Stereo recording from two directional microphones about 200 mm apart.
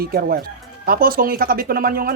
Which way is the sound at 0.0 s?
50° right (ahead or behind).